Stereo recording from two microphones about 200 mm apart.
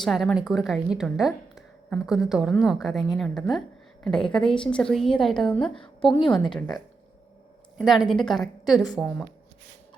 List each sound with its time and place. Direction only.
0.0 s speech: centre (ahead or behind)
6.0 s a woman's voice: 25° left (ahead or behind)
6.3 s speech: centre (ahead or behind)
7.8 s speech: centre (ahead or behind)